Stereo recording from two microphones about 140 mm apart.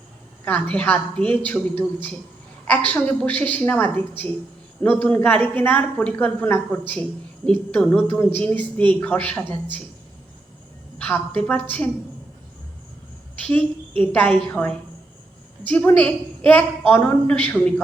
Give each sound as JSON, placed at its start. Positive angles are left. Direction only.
{"t": 0.4, "sound": "a woman's voice", "side_deg": 10}
{"t": 2.6, "sound": "a woman's voice", "side_deg": 10}
{"t": 10.9, "sound": "a sound", "side_deg": 10}
{"t": 11.3, "sound": "a woman's voice", "side_deg": 10}
{"t": 13.5, "sound": "a woman's voice", "side_deg": 10}